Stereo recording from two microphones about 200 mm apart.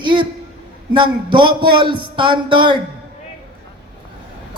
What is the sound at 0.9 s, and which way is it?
Speech, 25° right (ahead or behind).